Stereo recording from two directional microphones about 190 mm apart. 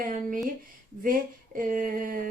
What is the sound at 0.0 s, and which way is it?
Speech, 45° right (ahead or behind).